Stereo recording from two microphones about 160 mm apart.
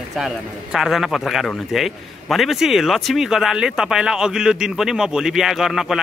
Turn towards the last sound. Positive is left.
turn(degrees=0)  # may be behind; listen again after turning